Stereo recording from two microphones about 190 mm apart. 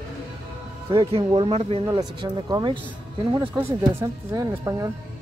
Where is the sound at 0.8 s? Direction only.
30° right (ahead or behind).